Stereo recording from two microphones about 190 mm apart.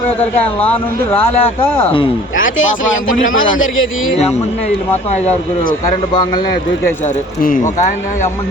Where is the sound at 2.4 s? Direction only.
90° left.